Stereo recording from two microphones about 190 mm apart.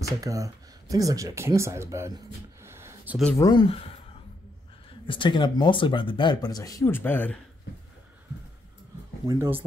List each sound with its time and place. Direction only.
0.2 s speech: 15° right (ahead or behind)
3.3 s speech: 20° left (ahead or behind)
5.0 s speech: 25° left (ahead or behind); by 7.3 s 10° left (ahead or behind)
9.3 s speech: 10° right (ahead or behind)